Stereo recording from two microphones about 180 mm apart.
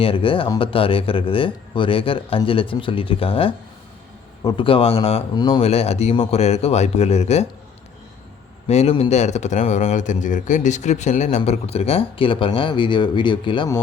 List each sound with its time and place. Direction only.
0.0 s speech: 30° left (ahead or behind)
8.6 s speech: 35° left (ahead or behind)